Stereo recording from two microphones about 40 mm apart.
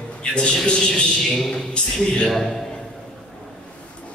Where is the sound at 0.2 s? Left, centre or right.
Left.